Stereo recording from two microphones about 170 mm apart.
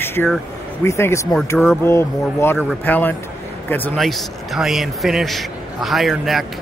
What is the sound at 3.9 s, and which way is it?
A man's voice, centre (ahead or behind).